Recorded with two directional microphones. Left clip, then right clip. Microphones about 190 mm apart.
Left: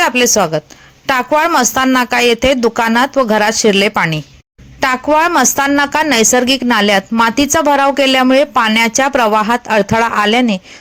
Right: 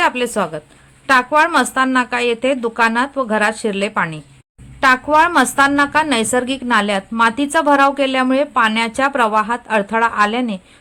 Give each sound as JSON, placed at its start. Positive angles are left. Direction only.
{"t": 0.0, "sound": "a woman's voice", "side_deg": 30}